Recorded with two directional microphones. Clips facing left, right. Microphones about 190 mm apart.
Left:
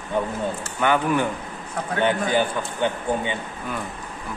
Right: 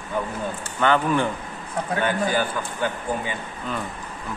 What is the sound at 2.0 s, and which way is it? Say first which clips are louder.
A man's voice: left 3 dB; 20° left (ahead or behind).